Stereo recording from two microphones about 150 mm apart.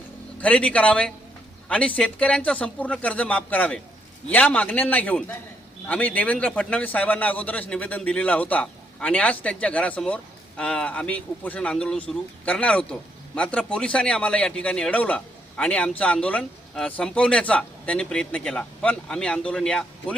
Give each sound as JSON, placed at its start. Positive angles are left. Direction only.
{"t": 0.4, "sound": "a man's voice", "side_deg": 10}